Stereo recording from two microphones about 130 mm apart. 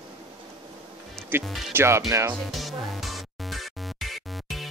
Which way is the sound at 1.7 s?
20° right (ahead or behind).